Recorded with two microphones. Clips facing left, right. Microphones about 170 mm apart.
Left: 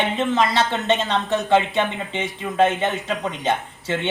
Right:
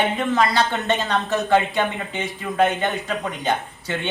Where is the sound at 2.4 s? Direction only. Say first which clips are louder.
Left 1 dB; 20° left (ahead or behind).